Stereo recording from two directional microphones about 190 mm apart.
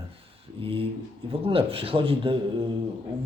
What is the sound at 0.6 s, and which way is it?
Speech, 30° right (ahead or behind).